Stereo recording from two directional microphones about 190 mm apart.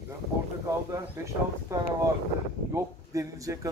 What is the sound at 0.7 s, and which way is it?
Speech, 15° right (ahead or behind).